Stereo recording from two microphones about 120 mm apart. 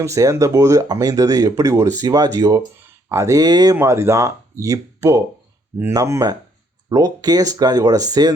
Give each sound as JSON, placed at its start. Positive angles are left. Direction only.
{"t": 0.0, "sound": "speech", "side_deg": -25}
{"t": 3.8, "sound": "speech", "side_deg": -20}